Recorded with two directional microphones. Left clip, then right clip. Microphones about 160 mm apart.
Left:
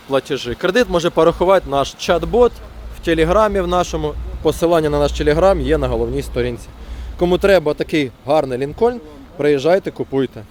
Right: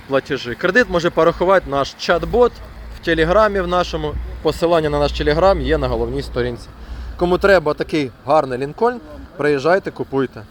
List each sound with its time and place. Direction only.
0.1 s speech: 40° left (ahead or behind)